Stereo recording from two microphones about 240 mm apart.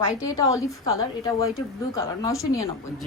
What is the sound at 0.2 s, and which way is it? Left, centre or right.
A woman's voice, centre.